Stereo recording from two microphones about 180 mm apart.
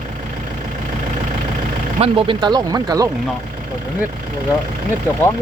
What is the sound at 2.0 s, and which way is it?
Speech, 30° right (ahead or behind).